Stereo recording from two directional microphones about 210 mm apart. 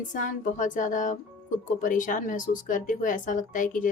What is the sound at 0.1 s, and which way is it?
Speech, 40° left (ahead or behind).